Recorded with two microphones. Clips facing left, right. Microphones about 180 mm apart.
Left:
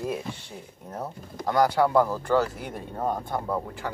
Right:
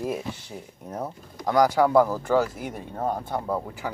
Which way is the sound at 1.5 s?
10° right (ahead or behind).